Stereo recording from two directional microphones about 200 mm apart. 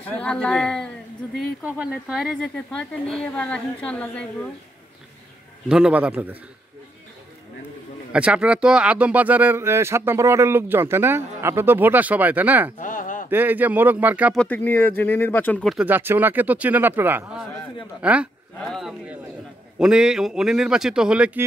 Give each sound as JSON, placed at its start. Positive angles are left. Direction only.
{"t": 0.0, "sound": "a man's voice", "side_deg": 5}
{"t": 5.7, "sound": "speech", "side_deg": -5}
{"t": 8.1, "sound": "speech", "side_deg": -5}
{"t": 12.7, "sound": "a sound", "side_deg": 40}
{"t": 13.3, "sound": "speech", "side_deg": -10}
{"t": 14.4, "sound": "a man's voice", "side_deg": 10}